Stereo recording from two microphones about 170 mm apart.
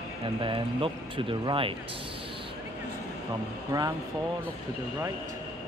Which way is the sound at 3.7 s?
20° right (ahead or behind).